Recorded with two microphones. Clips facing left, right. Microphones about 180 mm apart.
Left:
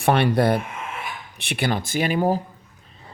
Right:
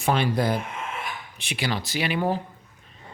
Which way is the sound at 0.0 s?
65° left (ahead or behind).